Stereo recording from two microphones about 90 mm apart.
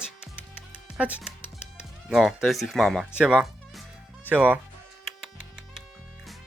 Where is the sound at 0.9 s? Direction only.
15° right (ahead or behind); by 3.0 s centre (ahead or behind).